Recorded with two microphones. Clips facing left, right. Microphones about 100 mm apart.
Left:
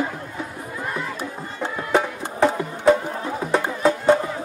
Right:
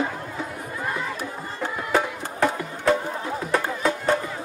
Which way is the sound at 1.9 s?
Centre (ahead or behind).